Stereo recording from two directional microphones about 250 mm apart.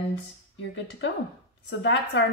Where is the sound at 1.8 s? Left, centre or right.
Left.